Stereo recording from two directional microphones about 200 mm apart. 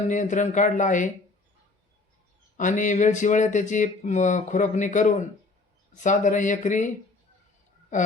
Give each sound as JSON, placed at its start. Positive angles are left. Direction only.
{"t": 0.1, "sound": "speech", "side_deg": 40}
{"t": 2.6, "sound": "speech", "side_deg": 40}
{"t": 7.9, "sound": "speech", "side_deg": 40}